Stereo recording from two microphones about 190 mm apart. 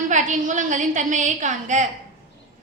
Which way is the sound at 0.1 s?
40° right (ahead or behind).